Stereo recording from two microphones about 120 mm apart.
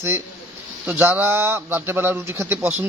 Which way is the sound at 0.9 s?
15° right (ahead or behind).